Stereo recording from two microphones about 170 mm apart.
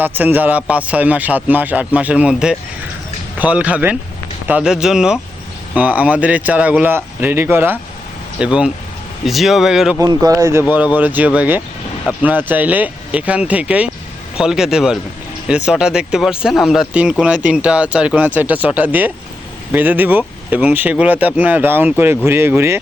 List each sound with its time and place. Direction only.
0.0 s speech: 10° right (ahead or behind)
10.0 s speech: 20° right (ahead or behind)